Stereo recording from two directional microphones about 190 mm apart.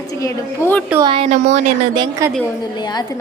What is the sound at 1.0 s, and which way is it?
Speech, 30° right (ahead or behind).